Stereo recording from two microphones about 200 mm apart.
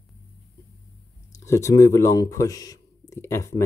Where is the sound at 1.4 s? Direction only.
15° left (ahead or behind).